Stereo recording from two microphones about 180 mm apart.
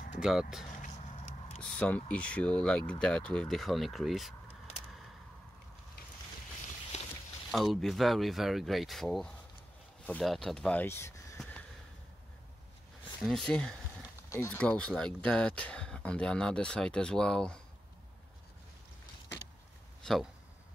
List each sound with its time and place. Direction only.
0.2 s speech: 5° right (ahead or behind)
0.8 s a sound: 40° left (ahead or behind)
1.6 s speech: 5° left (ahead or behind)
7.5 s speech: centre (ahead or behind)
13.5 s speech: 5° left (ahead or behind)
20.0 s a sound: centre (ahead or behind)